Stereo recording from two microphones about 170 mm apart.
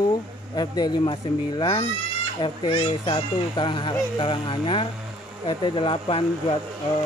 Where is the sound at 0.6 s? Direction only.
25° left (ahead or behind).